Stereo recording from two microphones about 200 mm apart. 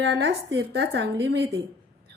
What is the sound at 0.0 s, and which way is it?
A woman's voice, 60° right (ahead or behind).